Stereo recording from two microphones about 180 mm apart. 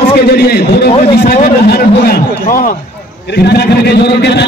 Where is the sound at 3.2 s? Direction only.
65° left (ahead or behind).